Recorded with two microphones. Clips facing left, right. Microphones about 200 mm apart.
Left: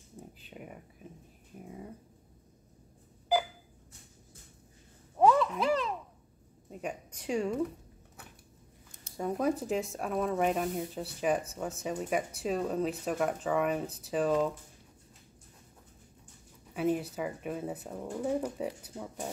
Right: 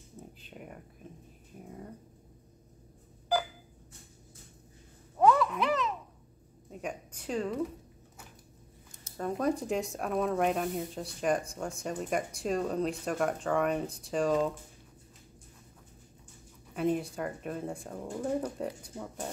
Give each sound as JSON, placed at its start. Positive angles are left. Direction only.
{"t": 0.5, "sound": "speech", "side_deg": 0}
{"t": 5.2, "sound": "a sound", "side_deg": 25}
{"t": 6.7, "sound": "a woman's voice", "side_deg": 5}
{"t": 9.1, "sound": "speech", "side_deg": 10}
{"t": 16.7, "sound": "speech", "side_deg": 5}